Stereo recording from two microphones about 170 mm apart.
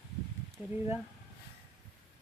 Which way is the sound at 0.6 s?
5° right (ahead or behind).